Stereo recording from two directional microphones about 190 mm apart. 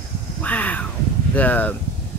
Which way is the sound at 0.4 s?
10° left (ahead or behind).